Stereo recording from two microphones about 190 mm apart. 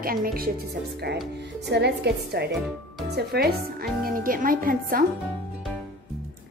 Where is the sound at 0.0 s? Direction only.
50° right (ahead or behind).